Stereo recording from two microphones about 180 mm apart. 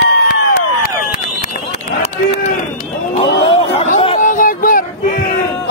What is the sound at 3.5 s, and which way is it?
Chatter, 30° left (ahead or behind).